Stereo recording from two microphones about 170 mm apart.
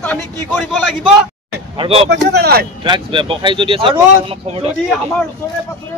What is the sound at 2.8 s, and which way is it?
Speech, 30° right (ahead or behind).